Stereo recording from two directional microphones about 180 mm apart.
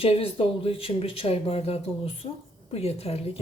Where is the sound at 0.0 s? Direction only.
30° left (ahead or behind).